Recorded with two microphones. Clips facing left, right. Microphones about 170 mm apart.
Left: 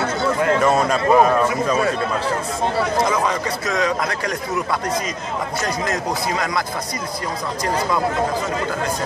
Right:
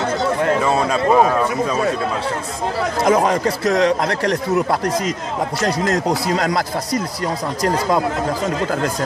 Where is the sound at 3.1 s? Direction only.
45° right (ahead or behind).